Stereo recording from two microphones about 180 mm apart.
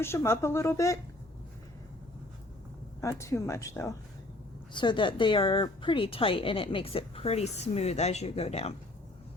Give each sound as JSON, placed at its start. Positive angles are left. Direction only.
{"t": 0.0, "sound": "speech", "side_deg": 15}
{"t": 3.0, "sound": "speech", "side_deg": 15}